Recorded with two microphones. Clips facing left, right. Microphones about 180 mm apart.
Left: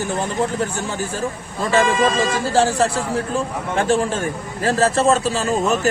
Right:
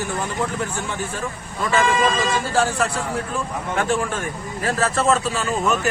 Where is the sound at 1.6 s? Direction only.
35° left (ahead or behind).